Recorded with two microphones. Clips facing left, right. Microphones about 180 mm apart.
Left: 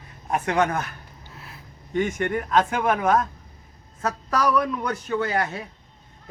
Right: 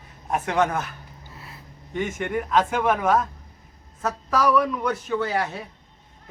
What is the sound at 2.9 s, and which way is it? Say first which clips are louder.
A man's voice: even; 5° right (ahead or behind).